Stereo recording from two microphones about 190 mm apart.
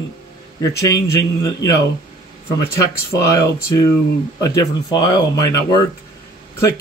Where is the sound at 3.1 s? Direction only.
15° left (ahead or behind).